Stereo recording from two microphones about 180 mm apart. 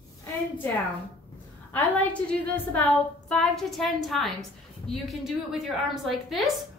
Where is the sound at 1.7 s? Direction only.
10° left (ahead or behind).